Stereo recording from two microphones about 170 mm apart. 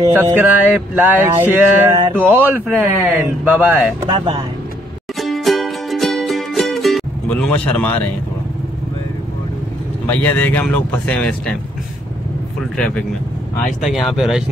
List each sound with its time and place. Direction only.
0.1 s a sound: 10° right (ahead or behind)
4.1 s speech: 30° right (ahead or behind)
5.2 s music: centre (ahead or behind)
10.0 s speech: 10° left (ahead or behind)
12.7 s speech: 5° left (ahead or behind)